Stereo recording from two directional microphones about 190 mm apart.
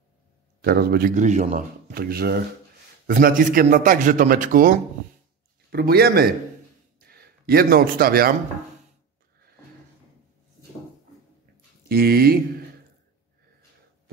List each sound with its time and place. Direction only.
0.6 s speech: 55° right (ahead or behind)
5.7 s a man's voice: 55° right (ahead or behind)
11.9 s speech: 55° right (ahead or behind)